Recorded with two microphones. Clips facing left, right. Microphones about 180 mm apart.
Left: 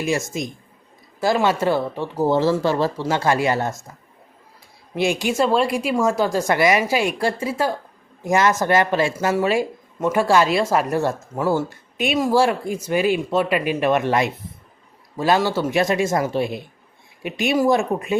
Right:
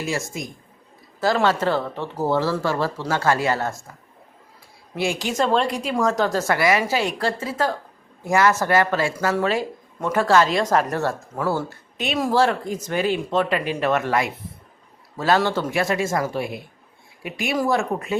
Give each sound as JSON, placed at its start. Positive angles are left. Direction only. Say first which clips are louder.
{"t": 0.0, "sound": "speech", "louder": "left 4 dB", "side_deg": 15}
{"t": 4.9, "sound": "speech", "louder": "left 3 dB", "side_deg": 15}
{"t": 15.4, "sound": "speech", "louder": "left 1 dB", "side_deg": 10}
{"t": 15.6, "sound": "speech", "louder": "left 3 dB", "side_deg": 20}